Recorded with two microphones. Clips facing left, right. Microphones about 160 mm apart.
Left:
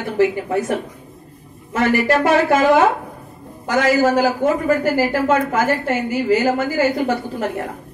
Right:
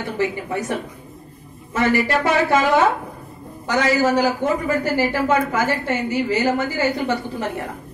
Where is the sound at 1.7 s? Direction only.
50° left (ahead or behind).